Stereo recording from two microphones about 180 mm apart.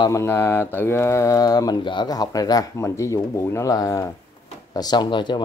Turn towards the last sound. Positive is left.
turn(degrees=25)  # may be behind; listen again after turning